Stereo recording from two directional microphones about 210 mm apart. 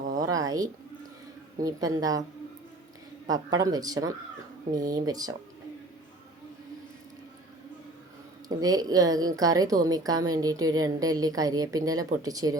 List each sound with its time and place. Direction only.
0.2 s a sound: 15° right (ahead or behind)
1.6 s a woman's voice: 15° right (ahead or behind)
3.2 s a woman's voice: 15° right (ahead or behind)
8.4 s a woman's voice: 15° right (ahead or behind)